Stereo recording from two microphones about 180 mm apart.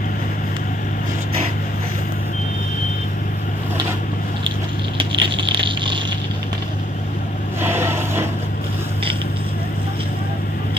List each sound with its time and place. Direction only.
5.2 s patter: 25° right (ahead or behind)
7.6 s vehicle: 15° right (ahead or behind)